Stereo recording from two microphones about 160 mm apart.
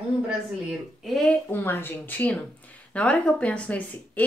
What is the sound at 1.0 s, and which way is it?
Speech, centre (ahead or behind).